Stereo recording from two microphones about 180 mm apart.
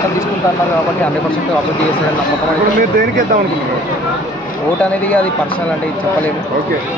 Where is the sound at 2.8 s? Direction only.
50° right (ahead or behind).